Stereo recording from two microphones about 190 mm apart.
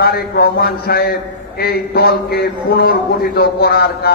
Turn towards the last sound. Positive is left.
turn(degrees=55)  # may be behind; listen again after turning